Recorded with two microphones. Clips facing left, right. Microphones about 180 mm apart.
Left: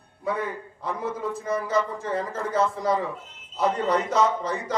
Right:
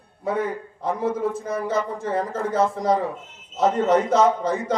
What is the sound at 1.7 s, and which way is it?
A man's voice, 55° right (ahead or behind).